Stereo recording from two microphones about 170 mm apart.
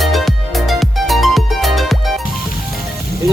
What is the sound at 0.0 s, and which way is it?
Music, centre (ahead or behind).